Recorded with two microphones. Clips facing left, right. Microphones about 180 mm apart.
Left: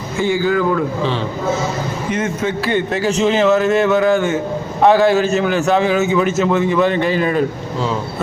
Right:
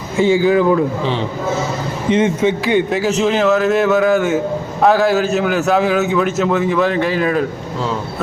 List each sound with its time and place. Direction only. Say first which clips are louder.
0.2 s a man's voice: right 4 dB; 20° right (ahead or behind)
2.0 s a man's voice: right 7 dB; 25° right (ahead or behind)
2.9 s a man's voice: even; 5° right (ahead or behind)